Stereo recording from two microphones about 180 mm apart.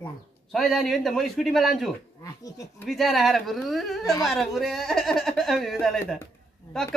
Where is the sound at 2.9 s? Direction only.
Centre (ahead or behind).